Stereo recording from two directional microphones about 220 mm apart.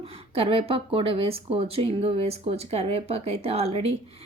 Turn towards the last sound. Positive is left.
turn(degrees=-25)  # may be behind; listen again after turning